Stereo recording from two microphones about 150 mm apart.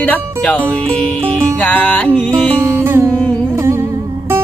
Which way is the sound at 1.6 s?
10° left (ahead or behind).